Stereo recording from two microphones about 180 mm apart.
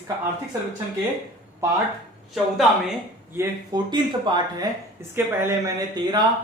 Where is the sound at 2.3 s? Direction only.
Centre (ahead or behind).